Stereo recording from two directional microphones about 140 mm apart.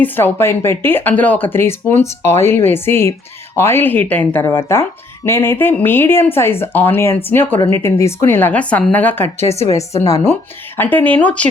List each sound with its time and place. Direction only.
0.0 s speech: 15° left (ahead or behind)
10.8 s speech: 10° left (ahead or behind)